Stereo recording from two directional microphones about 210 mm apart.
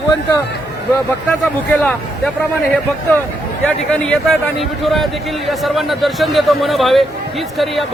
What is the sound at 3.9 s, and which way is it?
A man's voice, 5° left (ahead or behind).